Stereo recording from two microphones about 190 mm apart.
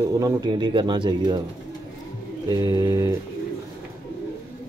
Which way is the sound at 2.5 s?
20° right (ahead or behind).